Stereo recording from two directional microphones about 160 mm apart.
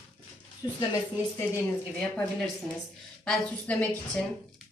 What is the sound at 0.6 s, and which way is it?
Speech, 25° left (ahead or behind).